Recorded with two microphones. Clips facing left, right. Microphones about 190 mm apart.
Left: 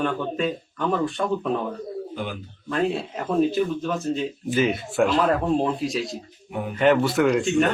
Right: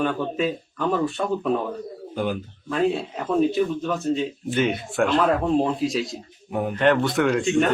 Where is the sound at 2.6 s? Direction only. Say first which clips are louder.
Right 1 dB; centre (ahead or behind).